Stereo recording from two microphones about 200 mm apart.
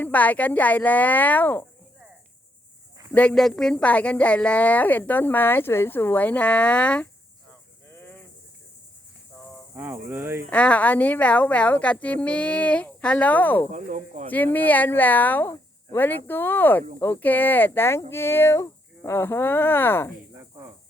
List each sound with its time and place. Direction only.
0.0 s a woman's voice: 10° left (ahead or behind)
3.1 s a woman's voice: 5° left (ahead or behind)
7.9 s cricket: 10° left (ahead or behind)
9.7 s speech: 10° right (ahead or behind)
10.5 s a woman's voice: 5° left (ahead or behind)
13.7 s speech: 40° right (ahead or behind)
14.3 s a woman's voice: 10° left (ahead or behind)
20.3 s cricket: 10° right (ahead or behind)